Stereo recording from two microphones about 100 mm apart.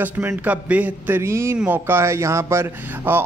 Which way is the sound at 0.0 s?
20° right (ahead or behind).